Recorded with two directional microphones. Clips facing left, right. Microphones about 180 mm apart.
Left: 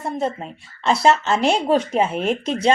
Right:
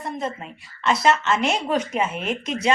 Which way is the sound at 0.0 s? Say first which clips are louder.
Left 5 dB; 35° left (ahead or behind).